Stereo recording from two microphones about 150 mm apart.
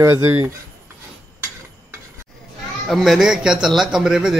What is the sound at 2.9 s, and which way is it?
A man's voice, centre (ahead or behind).